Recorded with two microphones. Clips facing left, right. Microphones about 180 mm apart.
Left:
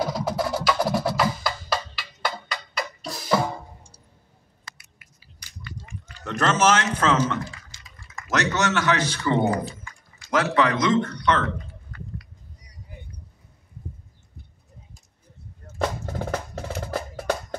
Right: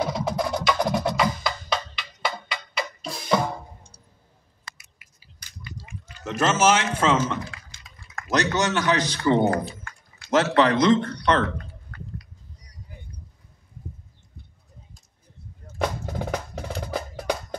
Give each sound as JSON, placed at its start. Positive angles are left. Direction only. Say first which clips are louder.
{"t": 0.0, "sound": "music", "louder": "even", "side_deg": 5}
{"t": 6.5, "sound": "speech", "louder": "even", "side_deg": -10}
{"t": 7.7, "sound": "typing", "louder": "right 3 dB", "side_deg": -60}
{"t": 8.3, "sound": "speech", "louder": "right 1 dB", "side_deg": -15}
{"t": 9.5, "sound": "a sound", "louder": "right 1 dB", "side_deg": -60}
{"t": 10.3, "sound": "speech", "louder": "right 2 dB", "side_deg": -25}
{"t": 11.9, "sound": "a sound", "louder": "left 1 dB", "side_deg": -65}
{"t": 16.6, "sound": "music", "louder": "left 1 dB", "side_deg": 5}